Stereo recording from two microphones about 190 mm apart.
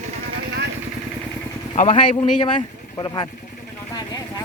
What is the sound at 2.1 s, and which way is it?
Speech, 25° left (ahead or behind).